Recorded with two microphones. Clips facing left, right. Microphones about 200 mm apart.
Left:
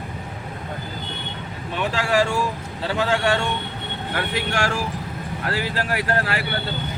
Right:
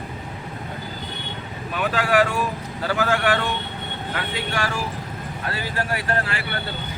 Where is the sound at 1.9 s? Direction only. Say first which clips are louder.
Right 1 dB; 30° left (ahead or behind).